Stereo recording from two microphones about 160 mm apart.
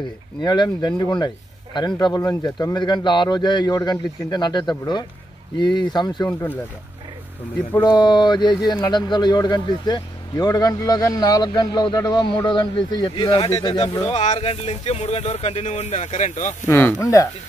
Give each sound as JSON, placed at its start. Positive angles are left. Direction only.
{"t": 0.4, "sound": "speech", "side_deg": 25}
{"t": 7.8, "sound": "speech", "side_deg": 25}
{"t": 14.1, "sound": "speech", "side_deg": 45}
{"t": 16.6, "sound": "speech", "side_deg": 15}